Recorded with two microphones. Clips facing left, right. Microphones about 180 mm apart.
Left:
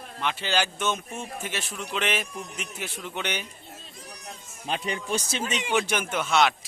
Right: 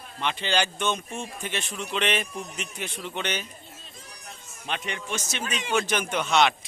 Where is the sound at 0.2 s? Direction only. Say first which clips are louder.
Right 1 dB; 5° left (ahead or behind).